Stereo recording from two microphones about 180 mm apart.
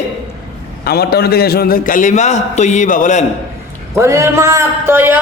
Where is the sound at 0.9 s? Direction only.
60° left (ahead or behind).